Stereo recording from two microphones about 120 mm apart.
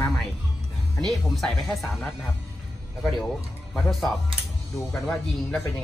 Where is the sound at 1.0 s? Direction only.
Centre (ahead or behind).